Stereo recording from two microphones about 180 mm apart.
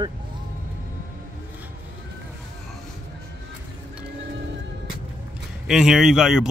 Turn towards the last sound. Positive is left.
turn(degrees=-5)  # may be behind; listen again after turning